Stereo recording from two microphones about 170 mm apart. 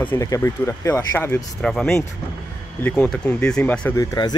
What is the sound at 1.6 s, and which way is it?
Speech, 5° left (ahead or behind).